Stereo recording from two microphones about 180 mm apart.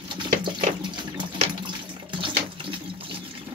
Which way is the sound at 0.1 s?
25° right (ahead or behind).